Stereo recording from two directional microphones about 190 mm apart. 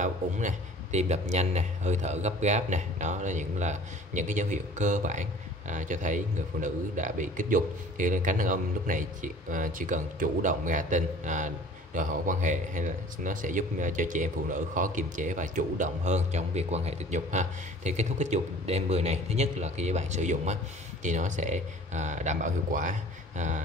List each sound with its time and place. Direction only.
0.0 s speech: 40° right (ahead or behind)